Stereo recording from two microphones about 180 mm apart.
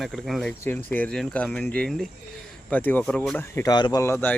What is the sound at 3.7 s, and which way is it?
Speech, 25° left (ahead or behind).